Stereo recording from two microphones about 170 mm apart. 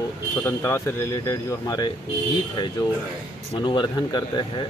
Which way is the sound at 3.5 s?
25° left (ahead or behind).